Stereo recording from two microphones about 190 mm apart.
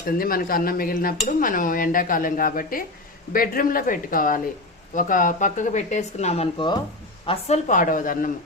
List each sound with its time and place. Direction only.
0.0 s stir: 50° left (ahead or behind)
4.9 s speech: 45° left (ahead or behind); by 6.7 s 30° left (ahead or behind)
7.3 s stir: 35° left (ahead or behind)